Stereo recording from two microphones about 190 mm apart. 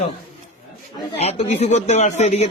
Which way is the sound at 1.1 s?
35° left (ahead or behind).